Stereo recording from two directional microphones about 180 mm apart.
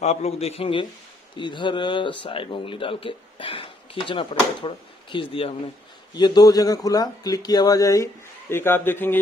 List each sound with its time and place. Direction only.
0.0 s a man's voice: 35° left (ahead or behind); by 9.2 s 10° left (ahead or behind)